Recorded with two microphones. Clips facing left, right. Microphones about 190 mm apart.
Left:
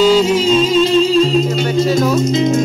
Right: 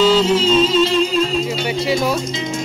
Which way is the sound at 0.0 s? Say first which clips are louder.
Left 3 dB; 10° left (ahead or behind).